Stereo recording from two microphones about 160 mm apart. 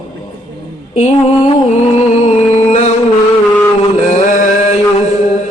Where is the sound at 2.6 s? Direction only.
45° left (ahead or behind).